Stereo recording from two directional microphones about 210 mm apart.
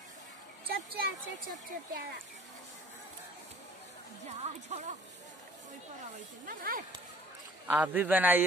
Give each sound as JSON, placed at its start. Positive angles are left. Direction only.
{"t": 0.9, "sound": "speech", "side_deg": -45}
{"t": 4.4, "sound": "speech", "side_deg": -30}
{"t": 6.4, "sound": "speech", "side_deg": -40}
{"t": 7.6, "sound": "a man's voice", "side_deg": -5}